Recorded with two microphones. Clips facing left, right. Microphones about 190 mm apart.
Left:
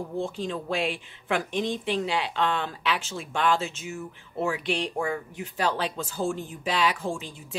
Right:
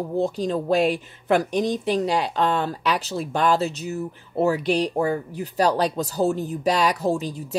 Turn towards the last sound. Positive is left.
turn(degrees=-40)  # may be behind; listen again after turning